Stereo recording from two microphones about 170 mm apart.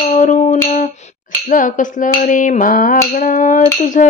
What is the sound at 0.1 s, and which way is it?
Music, 45° left (ahead or behind).